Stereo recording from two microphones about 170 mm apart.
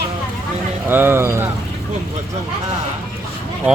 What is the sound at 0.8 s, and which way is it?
Speech, 10° right (ahead or behind).